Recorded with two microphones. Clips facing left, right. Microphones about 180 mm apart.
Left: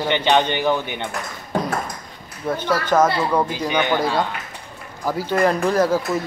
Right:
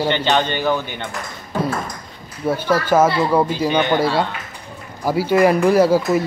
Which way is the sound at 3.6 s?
10° left (ahead or behind).